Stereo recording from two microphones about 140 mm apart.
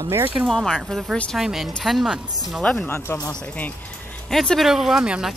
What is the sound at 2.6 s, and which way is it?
Speech, 10° left (ahead or behind).